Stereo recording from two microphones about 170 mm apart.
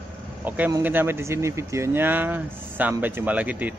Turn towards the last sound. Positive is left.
turn(degrees=-10)  # may be behind; listen again after turning